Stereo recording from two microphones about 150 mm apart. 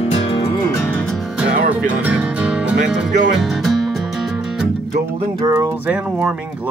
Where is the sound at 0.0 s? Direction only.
40° left (ahead or behind).